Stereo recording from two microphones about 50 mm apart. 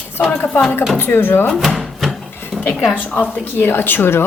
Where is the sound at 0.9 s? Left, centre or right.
Left.